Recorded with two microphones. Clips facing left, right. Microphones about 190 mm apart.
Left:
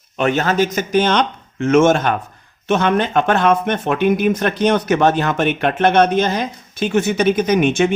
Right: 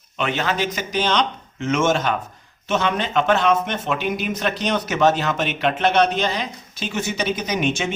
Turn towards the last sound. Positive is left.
turn(degrees=55)  # may be behind; listen again after turning